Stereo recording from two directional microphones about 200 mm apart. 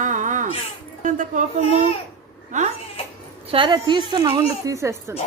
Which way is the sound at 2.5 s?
35° right (ahead or behind).